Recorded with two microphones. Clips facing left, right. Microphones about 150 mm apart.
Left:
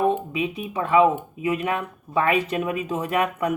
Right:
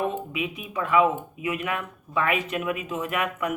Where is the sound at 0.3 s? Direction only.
30° left (ahead or behind).